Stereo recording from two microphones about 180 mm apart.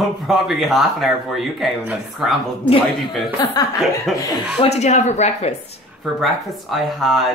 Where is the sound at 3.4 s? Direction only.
25° left (ahead or behind).